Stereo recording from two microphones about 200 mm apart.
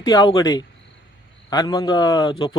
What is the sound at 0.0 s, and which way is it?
A man's voice, 20° left (ahead or behind).